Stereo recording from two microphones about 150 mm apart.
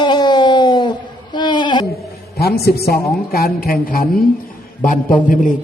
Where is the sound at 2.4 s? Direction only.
90° left; by 4.1 s 70° left (ahead or behind).